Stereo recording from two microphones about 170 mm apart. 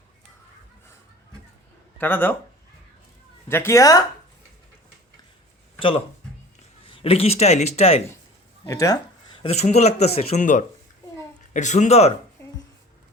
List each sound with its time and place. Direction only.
2.0 s speech: 10° left (ahead or behind)
3.5 s speech: 15° left (ahead or behind)
6.6 s a man's voice: 35° left (ahead or behind)
8.6 s speech: 20° left (ahead or behind); by 12.1 s 40° left (ahead or behind)